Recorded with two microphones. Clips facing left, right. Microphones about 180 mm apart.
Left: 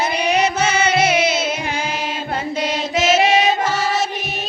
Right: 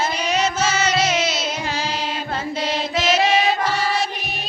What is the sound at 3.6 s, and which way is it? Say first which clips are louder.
Music: left 2 dB; 45° left (ahead or behind).